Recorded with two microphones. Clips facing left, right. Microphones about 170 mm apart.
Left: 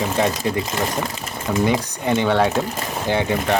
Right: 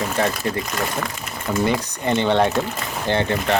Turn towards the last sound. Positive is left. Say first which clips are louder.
# left 1 dB
turn(degrees=10)  # may be behind; listen again after turning